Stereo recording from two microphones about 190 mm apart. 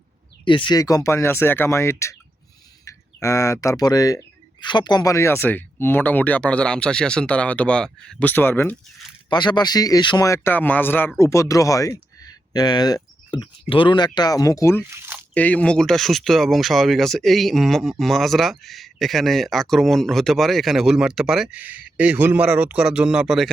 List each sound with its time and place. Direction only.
0.4 s speech: 25° left (ahead or behind)
9.3 s speech: 25° left (ahead or behind)
14.8 s a sound: 15° right (ahead or behind)
15.4 s speech: 10° left (ahead or behind)